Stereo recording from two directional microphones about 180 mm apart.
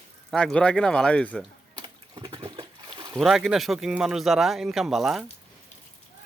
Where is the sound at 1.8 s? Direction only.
25° right (ahead or behind).